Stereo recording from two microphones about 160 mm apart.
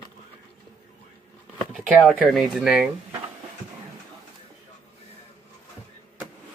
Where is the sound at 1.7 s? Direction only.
5° right (ahead or behind).